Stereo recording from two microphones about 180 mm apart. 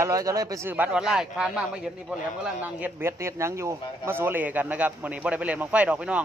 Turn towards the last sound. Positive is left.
turn(degrees=-5)  # may be behind; listen again after turning